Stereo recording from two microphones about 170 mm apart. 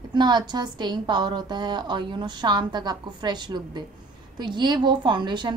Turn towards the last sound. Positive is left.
turn(degrees=-25)  # may be behind; listen again after turning